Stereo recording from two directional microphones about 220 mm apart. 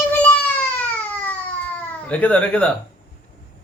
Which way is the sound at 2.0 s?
5° left (ahead or behind).